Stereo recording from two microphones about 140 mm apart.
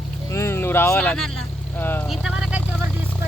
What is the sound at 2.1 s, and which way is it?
Vehicle, 5° right (ahead or behind).